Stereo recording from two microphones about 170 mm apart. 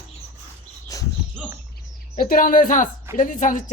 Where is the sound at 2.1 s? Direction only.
55° left (ahead or behind).